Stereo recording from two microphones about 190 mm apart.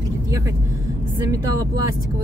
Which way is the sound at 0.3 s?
15° right (ahead or behind).